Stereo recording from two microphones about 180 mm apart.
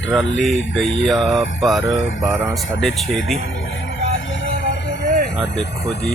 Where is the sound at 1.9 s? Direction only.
90° left.